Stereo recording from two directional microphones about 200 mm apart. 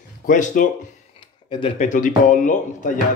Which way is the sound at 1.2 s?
25° left (ahead or behind).